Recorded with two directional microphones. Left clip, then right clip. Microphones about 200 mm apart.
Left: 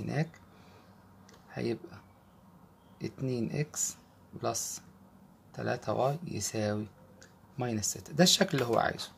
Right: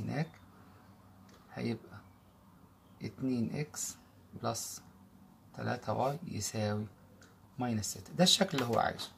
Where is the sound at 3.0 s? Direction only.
40° left (ahead or behind).